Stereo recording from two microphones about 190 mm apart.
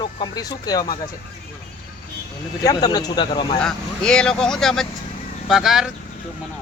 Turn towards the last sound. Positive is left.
turn(degrees=0)  # may be behind; listen again after turning